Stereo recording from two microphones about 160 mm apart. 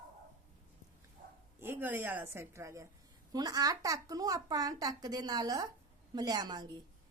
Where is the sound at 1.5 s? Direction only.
15° right (ahead or behind).